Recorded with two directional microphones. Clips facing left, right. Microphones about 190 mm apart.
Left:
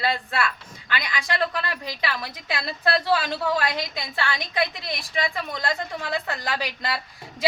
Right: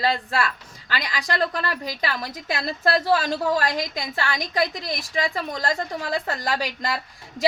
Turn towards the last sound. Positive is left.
turn(degrees=-45)  # may be behind; listen again after turning